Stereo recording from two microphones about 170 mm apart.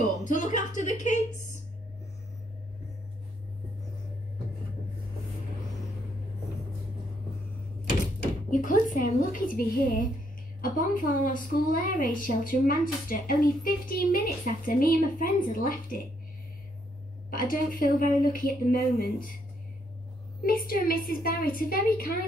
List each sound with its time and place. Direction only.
0.0 s a woman's voice: 45° left (ahead or behind)
8.5 s a woman's voice: 50° left (ahead or behind)
17.3 s a woman's voice: 55° left (ahead or behind)
20.4 s a woman's voice: 60° left (ahead or behind)